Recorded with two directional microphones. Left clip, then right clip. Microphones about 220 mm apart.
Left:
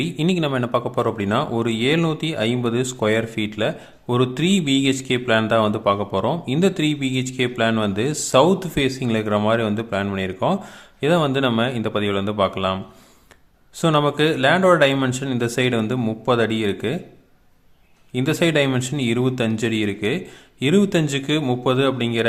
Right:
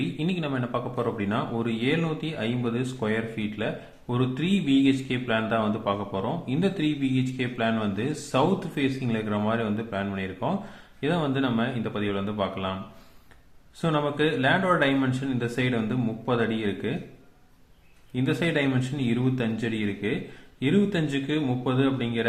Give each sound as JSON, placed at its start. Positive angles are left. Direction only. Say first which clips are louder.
{"t": 0.0, "sound": "speech", "louder": "left 8 dB", "side_deg": 40}
{"t": 13.8, "sound": "speech", "louder": "left 7 dB", "side_deg": 40}
{"t": 18.1, "sound": "speech", "louder": "left 7 dB", "side_deg": 45}